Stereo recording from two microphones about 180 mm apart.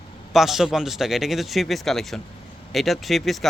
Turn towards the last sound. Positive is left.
turn(degrees=0)  # may be behind; listen again after turning